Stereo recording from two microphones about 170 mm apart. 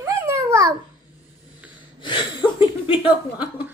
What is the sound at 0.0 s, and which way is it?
Babbling, 15° right (ahead or behind).